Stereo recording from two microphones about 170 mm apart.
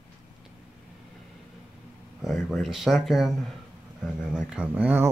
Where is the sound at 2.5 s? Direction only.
Centre (ahead or behind).